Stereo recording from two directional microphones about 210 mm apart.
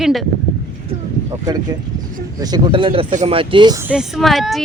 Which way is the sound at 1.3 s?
15° right (ahead or behind).